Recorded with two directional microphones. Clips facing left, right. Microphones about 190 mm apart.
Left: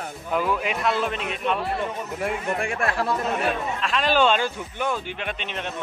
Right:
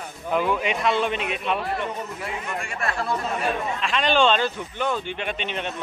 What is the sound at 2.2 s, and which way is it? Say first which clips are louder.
Speech: left 5 dB; 55° left (ahead or behind).